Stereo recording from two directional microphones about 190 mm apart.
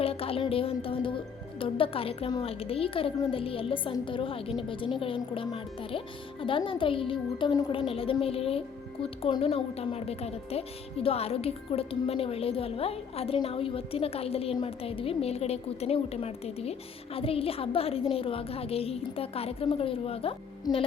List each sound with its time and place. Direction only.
0.0 s a woman's voice: 30° left (ahead or behind)